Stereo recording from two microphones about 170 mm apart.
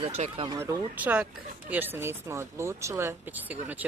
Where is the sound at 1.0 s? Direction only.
10° right (ahead or behind).